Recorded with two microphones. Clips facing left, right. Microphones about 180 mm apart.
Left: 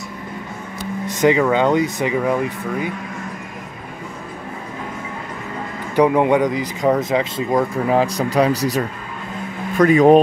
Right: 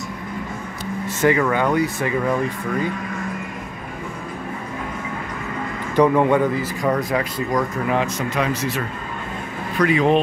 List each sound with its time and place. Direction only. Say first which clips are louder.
1.0 s speech: left 3 dB; 15° left (ahead or behind)
5.9 s speech: left 1 dB; 15° left (ahead or behind); by 10.1 s 45° left (ahead or behind)